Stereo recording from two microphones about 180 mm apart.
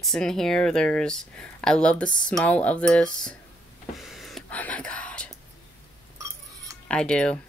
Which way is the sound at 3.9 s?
Centre (ahead or behind).